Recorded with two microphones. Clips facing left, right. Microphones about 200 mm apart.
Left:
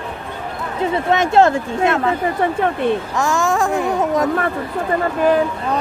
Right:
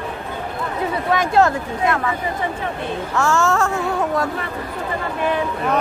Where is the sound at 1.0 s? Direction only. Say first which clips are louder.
Left 3 dB; 25° left (ahead or behind).